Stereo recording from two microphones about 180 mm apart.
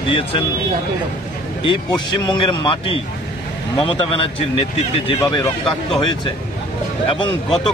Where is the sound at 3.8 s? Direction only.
30° left (ahead or behind).